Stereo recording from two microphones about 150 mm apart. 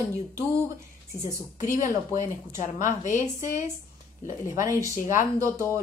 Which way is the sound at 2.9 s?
55° left (ahead or behind).